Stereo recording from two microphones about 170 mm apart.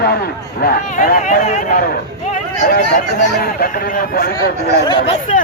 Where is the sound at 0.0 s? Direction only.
65° left (ahead or behind).